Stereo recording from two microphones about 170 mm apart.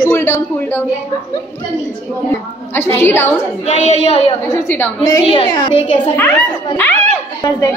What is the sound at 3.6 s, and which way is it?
Speech, 40° left (ahead or behind).